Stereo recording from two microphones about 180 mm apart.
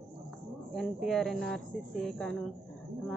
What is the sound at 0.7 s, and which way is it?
Speech, centre (ahead or behind).